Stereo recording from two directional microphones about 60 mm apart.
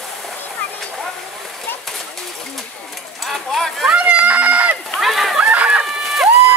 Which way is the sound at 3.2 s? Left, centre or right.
Centre.